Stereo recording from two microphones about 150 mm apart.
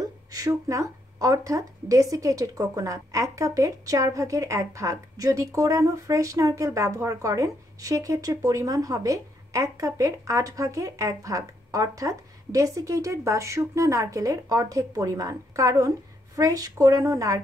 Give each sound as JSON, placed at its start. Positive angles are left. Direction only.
{"t": 0.3, "sound": "a woman's voice", "side_deg": -20}